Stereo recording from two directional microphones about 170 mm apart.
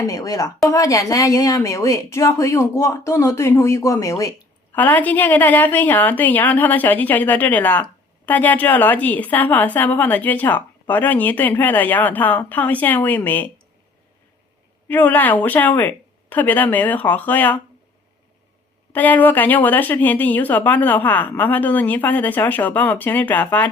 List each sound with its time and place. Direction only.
0.0 s a woman's voice: 20° left (ahead or behind)
14.8 s a woman's voice: 10° left (ahead or behind)
18.9 s a woman's voice: 10° left (ahead or behind)